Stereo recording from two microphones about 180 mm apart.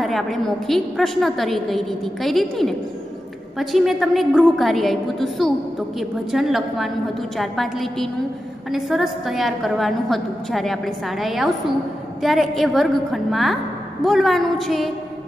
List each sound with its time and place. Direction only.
0.0 s a woman's voice: centre (ahead or behind)